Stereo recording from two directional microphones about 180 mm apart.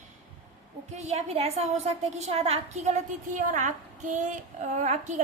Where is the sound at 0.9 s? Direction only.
35° right (ahead or behind).